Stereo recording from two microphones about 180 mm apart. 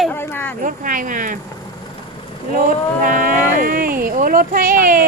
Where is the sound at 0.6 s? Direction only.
50° right (ahead or behind).